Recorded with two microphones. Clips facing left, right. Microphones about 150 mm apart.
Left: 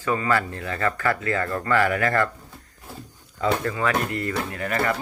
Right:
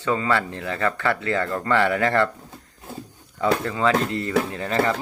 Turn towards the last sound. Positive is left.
turn(degrees=-25)  # may be behind; listen again after turning